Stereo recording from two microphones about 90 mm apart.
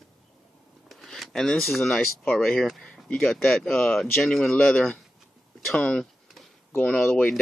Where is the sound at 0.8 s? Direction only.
5° left (ahead or behind).